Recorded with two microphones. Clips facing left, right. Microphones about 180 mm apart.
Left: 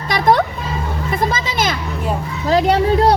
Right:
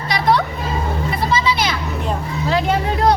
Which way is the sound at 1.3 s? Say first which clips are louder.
Right 1 dB; 45° left (ahead or behind).